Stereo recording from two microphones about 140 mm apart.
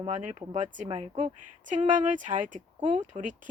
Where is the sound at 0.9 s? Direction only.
45° right (ahead or behind).